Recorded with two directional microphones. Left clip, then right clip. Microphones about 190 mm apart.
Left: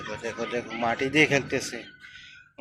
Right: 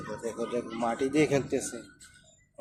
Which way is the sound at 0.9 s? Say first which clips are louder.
Left 5 dB; 5° right (ahead or behind).